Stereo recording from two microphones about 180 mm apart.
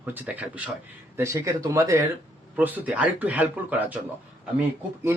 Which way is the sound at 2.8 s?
10° right (ahead or behind).